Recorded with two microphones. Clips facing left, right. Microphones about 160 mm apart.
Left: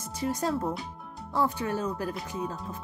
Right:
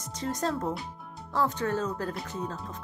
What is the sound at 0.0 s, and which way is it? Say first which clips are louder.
Speech: left 1 dB; 10° left (ahead or behind).